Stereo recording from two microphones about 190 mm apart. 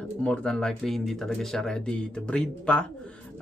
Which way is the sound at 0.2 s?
5° left (ahead or behind).